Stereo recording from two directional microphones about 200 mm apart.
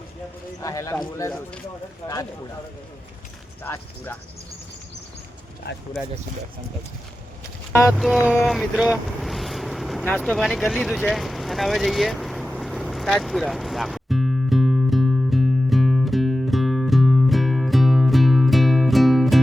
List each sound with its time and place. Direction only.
0.6 s speech: 15° left (ahead or behind)
3.6 s speech: 10° left (ahead or behind)
5.7 s speech: 55° left (ahead or behind)
7.7 s speech: 15° left (ahead or behind)
7.9 s music: centre (ahead or behind)
8.4 s vehicle: centre (ahead or behind)